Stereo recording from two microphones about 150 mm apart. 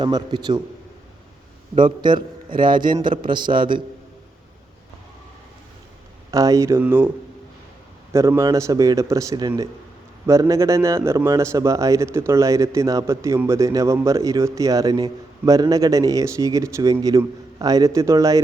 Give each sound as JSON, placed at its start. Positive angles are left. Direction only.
{"t": 0.0, "sound": "a man's voice", "side_deg": -30}
{"t": 1.7, "sound": "a man's voice", "side_deg": -30}
{"t": 6.3, "sound": "a man's voice", "side_deg": -20}
{"t": 8.1, "sound": "a man's voice", "side_deg": -20}